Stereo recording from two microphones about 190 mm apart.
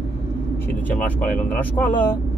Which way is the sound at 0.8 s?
5° left (ahead or behind).